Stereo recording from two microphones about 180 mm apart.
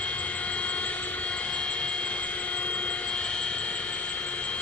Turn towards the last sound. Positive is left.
turn(degrees=5)  # may be behind; listen again after turning